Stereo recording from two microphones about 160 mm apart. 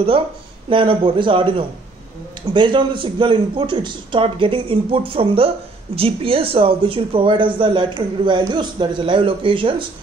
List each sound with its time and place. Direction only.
0.7 s speech: 30° right (ahead or behind)